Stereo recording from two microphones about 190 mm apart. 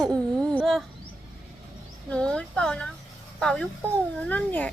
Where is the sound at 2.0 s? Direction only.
5° left (ahead or behind).